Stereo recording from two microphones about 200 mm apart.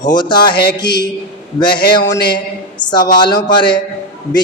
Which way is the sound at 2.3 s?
20° left (ahead or behind).